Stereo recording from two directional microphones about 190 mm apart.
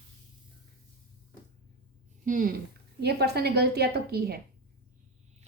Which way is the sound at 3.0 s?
60° right (ahead or behind).